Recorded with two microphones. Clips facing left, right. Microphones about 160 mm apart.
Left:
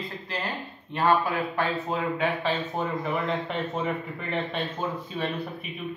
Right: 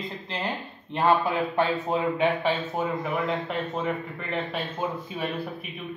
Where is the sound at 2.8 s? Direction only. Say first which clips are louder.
Right 1 dB; 5° right (ahead or behind).